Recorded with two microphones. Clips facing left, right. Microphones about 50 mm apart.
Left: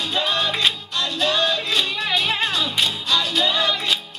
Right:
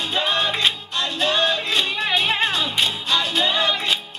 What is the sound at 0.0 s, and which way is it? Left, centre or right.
Music, centre.